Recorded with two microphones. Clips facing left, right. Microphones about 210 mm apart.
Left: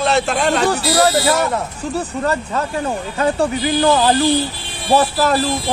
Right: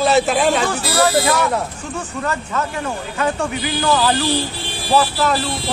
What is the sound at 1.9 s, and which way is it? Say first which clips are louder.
Speech: left 4 dB; 35° left (ahead or behind).